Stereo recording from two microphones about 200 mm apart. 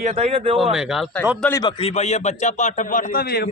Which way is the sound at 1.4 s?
15° left (ahead or behind).